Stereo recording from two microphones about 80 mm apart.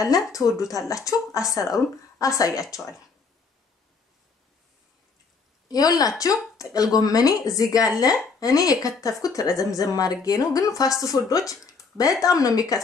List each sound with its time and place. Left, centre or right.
0.0 s a woman's voice: left
5.7 s a woman's voice: left